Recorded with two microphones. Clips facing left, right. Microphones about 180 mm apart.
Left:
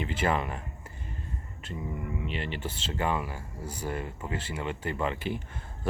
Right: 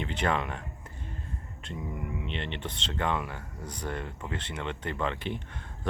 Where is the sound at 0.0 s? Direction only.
5° left (ahead or behind).